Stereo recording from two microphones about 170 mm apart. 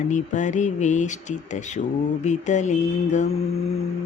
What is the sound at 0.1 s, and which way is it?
Mantra, 45° left (ahead or behind).